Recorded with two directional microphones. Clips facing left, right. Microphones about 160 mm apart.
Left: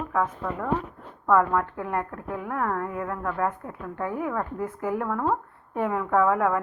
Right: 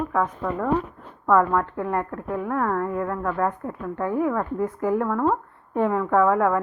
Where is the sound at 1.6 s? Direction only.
25° right (ahead or behind).